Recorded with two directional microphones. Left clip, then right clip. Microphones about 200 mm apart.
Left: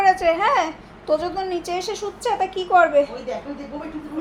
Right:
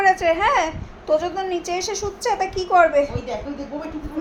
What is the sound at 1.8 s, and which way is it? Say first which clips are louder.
Speech: right 1 dB; 20° left (ahead or behind).